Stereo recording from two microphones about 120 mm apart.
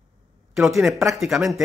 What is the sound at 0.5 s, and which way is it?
Speech, centre (ahead or behind).